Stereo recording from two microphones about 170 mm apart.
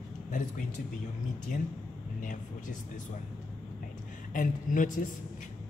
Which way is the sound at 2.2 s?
50° left (ahead or behind).